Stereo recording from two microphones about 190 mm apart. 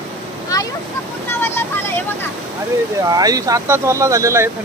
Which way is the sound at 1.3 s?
10° left (ahead or behind).